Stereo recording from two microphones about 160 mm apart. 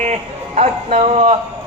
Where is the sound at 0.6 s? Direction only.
45° right (ahead or behind).